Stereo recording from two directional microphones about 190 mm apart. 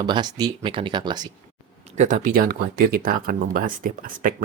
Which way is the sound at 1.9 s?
40° right (ahead or behind).